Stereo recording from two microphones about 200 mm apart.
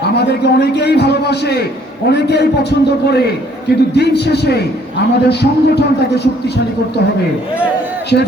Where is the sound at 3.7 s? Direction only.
55° left (ahead or behind).